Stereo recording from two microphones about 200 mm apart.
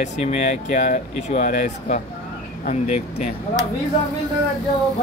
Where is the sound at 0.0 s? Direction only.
35° left (ahead or behind).